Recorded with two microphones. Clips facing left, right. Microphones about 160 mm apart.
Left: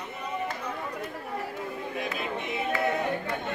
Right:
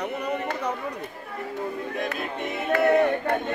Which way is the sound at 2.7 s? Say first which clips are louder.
Right 9 dB; 70° right (ahead or behind).